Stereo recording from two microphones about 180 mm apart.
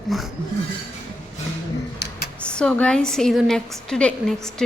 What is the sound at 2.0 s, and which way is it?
Computer keyboard, 70° left (ahead or behind).